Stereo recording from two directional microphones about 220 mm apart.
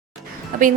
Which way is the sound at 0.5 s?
40° right (ahead or behind).